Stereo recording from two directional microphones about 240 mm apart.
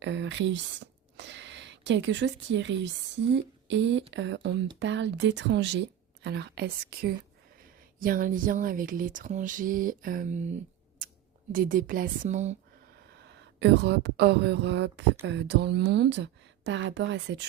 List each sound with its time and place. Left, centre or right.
0.0 s speech: right
11.5 s speech: right
13.1 s speech: right